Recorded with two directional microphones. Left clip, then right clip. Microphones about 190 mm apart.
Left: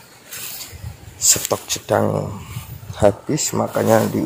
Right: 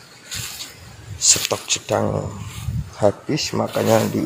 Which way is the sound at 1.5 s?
10° left (ahead or behind).